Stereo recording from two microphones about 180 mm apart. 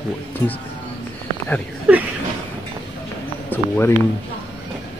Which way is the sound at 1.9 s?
5° right (ahead or behind).